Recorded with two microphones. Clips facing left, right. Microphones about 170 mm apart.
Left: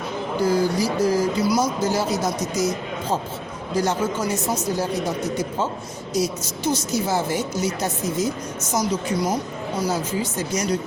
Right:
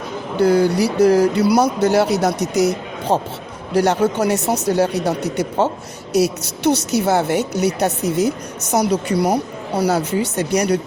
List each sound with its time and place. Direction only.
0.3 s a woman's voice: 70° right (ahead or behind)